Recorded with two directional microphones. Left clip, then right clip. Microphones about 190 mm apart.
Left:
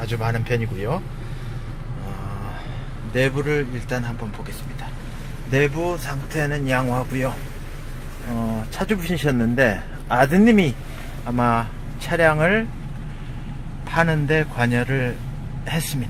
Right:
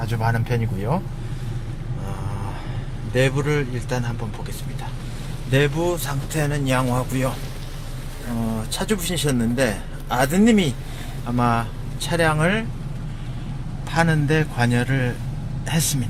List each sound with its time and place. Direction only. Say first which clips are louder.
0.0 s speech: right 1 dB; centre (ahead or behind)
3.1 s speech: even; 5° right (ahead or behind)
5.5 s speech: even; 5° left (ahead or behind)
8.8 s speech: left 1 dB; 15° left (ahead or behind)
11.3 s speech: left 1 dB; 10° left (ahead or behind)
13.9 s speech: left 1 dB; 5° left (ahead or behind)